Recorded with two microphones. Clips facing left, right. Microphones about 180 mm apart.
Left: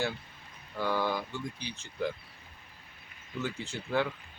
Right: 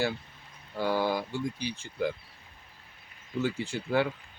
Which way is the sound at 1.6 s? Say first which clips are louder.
Right 7 dB; 10° right (ahead or behind).